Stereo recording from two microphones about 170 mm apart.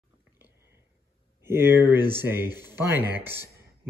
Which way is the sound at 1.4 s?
15° right (ahead or behind).